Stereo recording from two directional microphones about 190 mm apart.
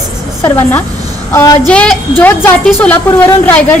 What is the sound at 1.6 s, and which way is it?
A woman's voice, 5° left (ahead or behind).